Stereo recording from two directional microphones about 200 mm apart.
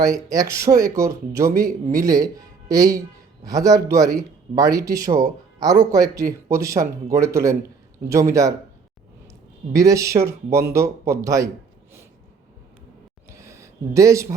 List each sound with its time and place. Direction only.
0.0 s speech: 15° right (ahead or behind)
9.7 s speech: 15° right (ahead or behind)
13.3 s a sound: 15° right (ahead or behind)